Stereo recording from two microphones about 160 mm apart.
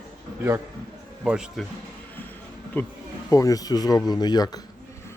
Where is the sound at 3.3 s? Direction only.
20° left (ahead or behind).